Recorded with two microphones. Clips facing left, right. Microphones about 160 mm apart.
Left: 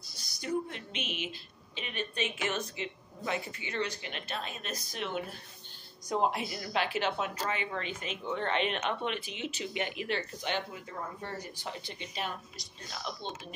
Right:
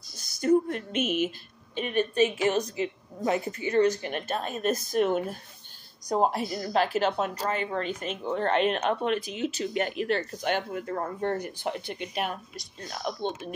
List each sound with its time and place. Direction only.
0.2 s speech: 45° right (ahead or behind)